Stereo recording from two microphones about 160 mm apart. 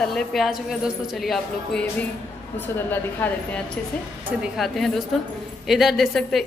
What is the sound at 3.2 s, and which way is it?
A woman's voice, 10° left (ahead or behind).